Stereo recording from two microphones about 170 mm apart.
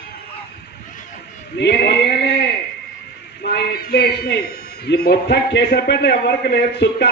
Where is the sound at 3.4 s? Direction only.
65° left (ahead or behind).